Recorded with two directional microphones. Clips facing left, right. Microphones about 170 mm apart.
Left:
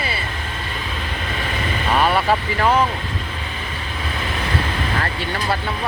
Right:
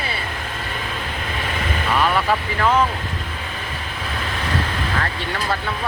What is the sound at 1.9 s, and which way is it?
Vehicle, 35° left (ahead or behind).